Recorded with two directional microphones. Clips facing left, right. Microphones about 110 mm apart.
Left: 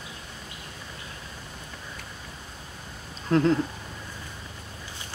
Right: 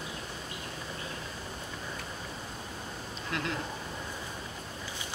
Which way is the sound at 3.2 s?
35° left (ahead or behind).